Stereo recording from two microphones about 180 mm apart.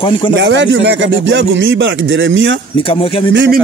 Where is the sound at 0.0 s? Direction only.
30° left (ahead or behind).